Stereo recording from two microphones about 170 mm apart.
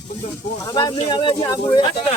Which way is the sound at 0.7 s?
25° left (ahead or behind).